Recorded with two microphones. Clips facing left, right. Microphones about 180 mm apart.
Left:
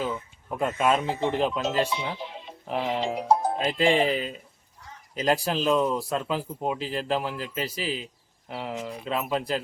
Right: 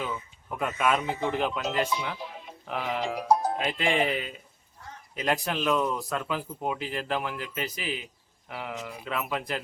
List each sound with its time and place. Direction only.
0.5 s speech: 30° left (ahead or behind)